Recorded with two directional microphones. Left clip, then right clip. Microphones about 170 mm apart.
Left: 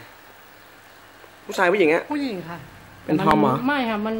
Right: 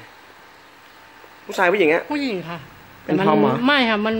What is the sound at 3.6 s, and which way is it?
Speech, 55° right (ahead or behind).